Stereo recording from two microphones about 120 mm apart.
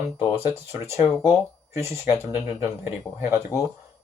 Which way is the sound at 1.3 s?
20° right (ahead or behind).